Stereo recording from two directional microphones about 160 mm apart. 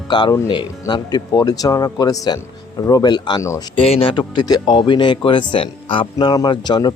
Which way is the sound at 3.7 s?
35° left (ahead or behind).